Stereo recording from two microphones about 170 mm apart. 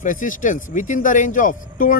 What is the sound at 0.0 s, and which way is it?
Speech, 50° left (ahead or behind).